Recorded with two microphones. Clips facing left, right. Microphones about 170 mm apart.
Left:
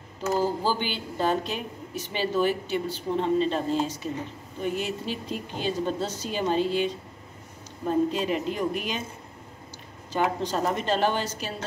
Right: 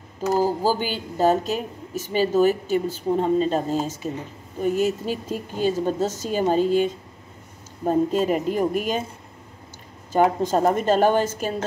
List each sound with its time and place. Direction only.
0.4 s a woman's voice: 40° right (ahead or behind)
10.1 s a woman's voice: 50° right (ahead or behind)